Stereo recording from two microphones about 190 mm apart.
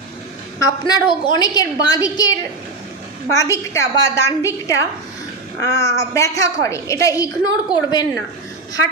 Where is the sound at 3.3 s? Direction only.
15° left (ahead or behind).